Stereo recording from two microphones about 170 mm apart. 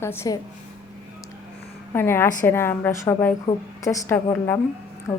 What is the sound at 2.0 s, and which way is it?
A woman's voice, 15° left (ahead or behind).